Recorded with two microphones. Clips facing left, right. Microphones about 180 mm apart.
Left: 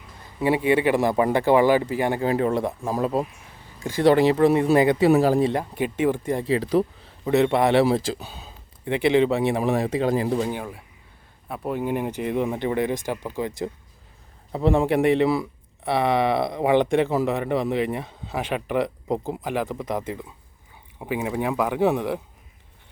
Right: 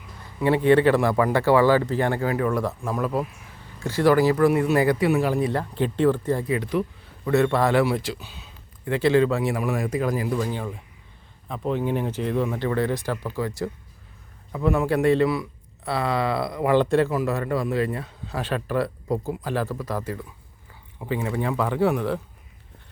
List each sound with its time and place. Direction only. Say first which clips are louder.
0.3 s speech: right 2 dB; 15° left (ahead or behind)
3.8 s speech: left 1 dB; 15° left (ahead or behind); by 5.5 s 35° left (ahead or behind)
5.5 s speech: even; 15° left (ahead or behind)
6.4 s speech: left 3 dB; 30° left (ahead or behind)
7.3 s speech: left 1 dB; 20° left (ahead or behind); by 8.5 s 35° left (ahead or behind)
8.8 s speech: even; 20° left (ahead or behind)
10.5 s speech: even; 10° left (ahead or behind)
14.5 s speech: left 2 dB; 30° left (ahead or behind)